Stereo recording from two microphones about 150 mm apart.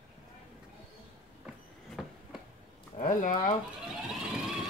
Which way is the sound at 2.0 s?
Centre (ahead or behind).